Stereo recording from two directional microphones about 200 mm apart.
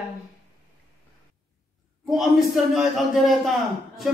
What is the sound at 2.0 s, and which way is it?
A man's voice, centre (ahead or behind).